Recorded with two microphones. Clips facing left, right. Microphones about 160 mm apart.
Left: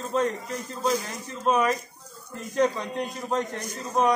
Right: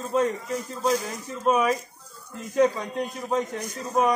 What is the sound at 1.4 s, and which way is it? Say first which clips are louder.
A man's voice: right 1 dB; 5° right (ahead or behind).